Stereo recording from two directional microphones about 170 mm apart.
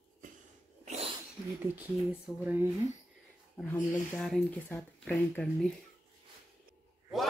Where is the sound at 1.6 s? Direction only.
10° right (ahead or behind).